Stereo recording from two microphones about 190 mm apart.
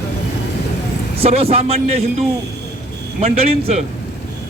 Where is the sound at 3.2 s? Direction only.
30° right (ahead or behind).